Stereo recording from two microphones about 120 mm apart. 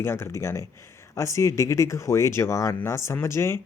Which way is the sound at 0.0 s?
20° left (ahead or behind).